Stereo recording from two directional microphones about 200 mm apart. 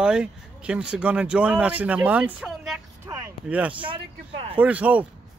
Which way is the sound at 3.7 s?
25° right (ahead or behind).